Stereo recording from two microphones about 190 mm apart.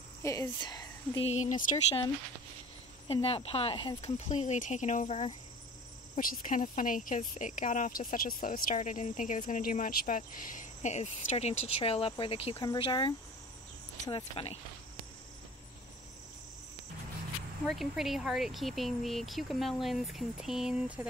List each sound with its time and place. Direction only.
0.2 s speech: 15° left (ahead or behind)
1.2 s speech: 35° left (ahead or behind)
3.1 s speech: 30° left (ahead or behind)
17.6 s speech: centre (ahead or behind)